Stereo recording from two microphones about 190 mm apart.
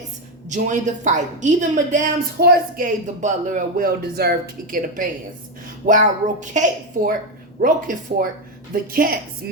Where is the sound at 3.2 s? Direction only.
40° right (ahead or behind).